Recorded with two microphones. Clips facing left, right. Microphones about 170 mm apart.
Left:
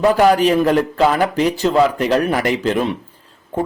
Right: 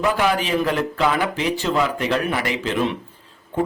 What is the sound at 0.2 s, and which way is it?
A man's voice, 45° left (ahead or behind).